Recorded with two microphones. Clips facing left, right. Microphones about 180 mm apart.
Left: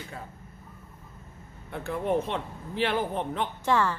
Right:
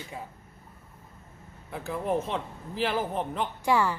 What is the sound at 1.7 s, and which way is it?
A man's voice, centre (ahead or behind).